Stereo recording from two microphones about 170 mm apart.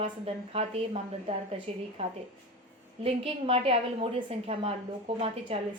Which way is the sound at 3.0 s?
35° right (ahead or behind).